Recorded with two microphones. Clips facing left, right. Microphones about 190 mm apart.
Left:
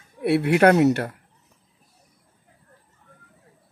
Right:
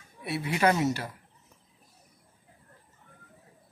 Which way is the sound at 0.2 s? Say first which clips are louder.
Left 10 dB; 65° left (ahead or behind).